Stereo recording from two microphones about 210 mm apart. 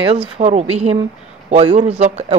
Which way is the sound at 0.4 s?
30° right (ahead or behind).